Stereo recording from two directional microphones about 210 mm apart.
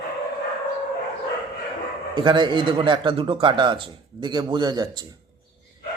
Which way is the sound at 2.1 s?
20° right (ahead or behind).